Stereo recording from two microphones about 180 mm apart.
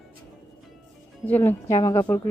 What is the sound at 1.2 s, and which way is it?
Speech, 10° left (ahead or behind).